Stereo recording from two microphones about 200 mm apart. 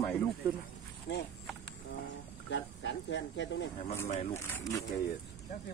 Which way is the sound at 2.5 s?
65° left (ahead or behind).